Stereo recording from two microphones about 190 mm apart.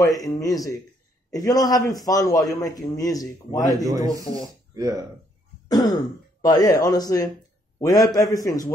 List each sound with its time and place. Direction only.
0.0 s speech: 20° left (ahead or behind)
3.8 s a man's voice: 20° right (ahead or behind)
5.9 s speech: 20° left (ahead or behind)